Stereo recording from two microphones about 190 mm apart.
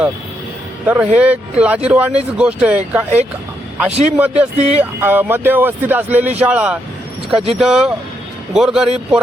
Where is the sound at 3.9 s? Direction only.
35° right (ahead or behind).